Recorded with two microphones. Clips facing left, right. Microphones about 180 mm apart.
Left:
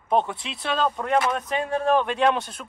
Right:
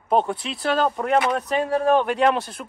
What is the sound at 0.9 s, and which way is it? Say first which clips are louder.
Speech: right 2 dB; 20° right (ahead or behind).